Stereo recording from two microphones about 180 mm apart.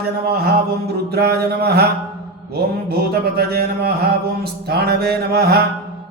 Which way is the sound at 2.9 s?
60° right (ahead or behind).